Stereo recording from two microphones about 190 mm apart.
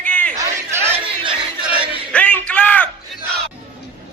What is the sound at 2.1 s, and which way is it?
Music, 5° left (ahead or behind).